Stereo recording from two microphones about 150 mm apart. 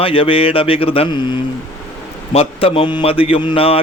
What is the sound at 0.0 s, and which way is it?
Speech, 35° left (ahead or behind).